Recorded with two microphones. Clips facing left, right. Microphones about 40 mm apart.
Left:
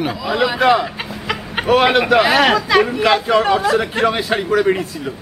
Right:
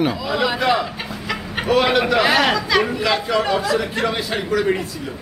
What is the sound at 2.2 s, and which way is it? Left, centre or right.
A woman's voice, centre.